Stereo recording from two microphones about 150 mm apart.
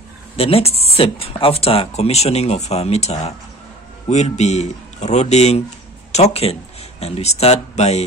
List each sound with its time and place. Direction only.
0.4 s speech: 40° left (ahead or behind)